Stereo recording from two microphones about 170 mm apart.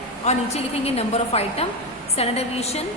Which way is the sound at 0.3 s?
40° left (ahead or behind).